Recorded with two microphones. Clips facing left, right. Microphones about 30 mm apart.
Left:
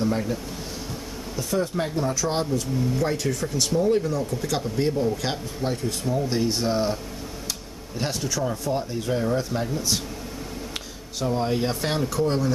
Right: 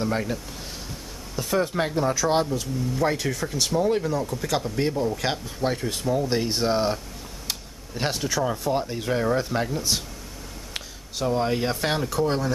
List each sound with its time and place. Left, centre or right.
0.0 s speech: centre
1.5 s speech: right
2.0 s speech: centre
8.0 s speech: centre
9.8 s speech: centre